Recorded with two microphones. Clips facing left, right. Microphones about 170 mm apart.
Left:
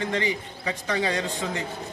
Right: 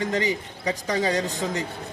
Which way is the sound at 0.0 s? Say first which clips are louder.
Right 2 dB; 40° right (ahead or behind).